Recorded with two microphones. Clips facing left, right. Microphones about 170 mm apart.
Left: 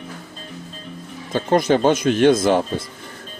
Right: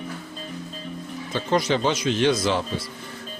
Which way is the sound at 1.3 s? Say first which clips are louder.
Left 6 dB; 50° left (ahead or behind).